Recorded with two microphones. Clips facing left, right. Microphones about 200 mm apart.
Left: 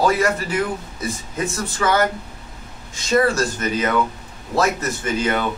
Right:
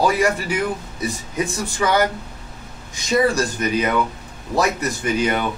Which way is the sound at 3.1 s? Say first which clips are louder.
Even; 15° right (ahead or behind).